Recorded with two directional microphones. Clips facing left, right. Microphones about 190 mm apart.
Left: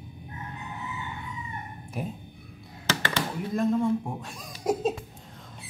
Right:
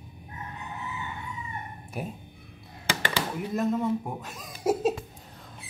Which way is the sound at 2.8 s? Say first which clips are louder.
Left 1 dB; 10° right (ahead or behind).